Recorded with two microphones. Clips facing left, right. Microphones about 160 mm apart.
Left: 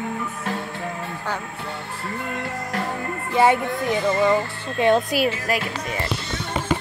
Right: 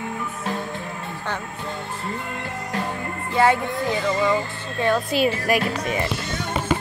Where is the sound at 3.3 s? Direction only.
20° left (ahead or behind).